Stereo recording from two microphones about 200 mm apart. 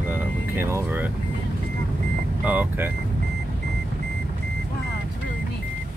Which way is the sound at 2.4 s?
10° right (ahead or behind).